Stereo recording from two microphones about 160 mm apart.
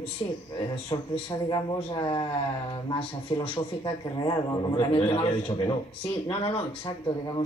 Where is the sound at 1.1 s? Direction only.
30° left (ahead or behind).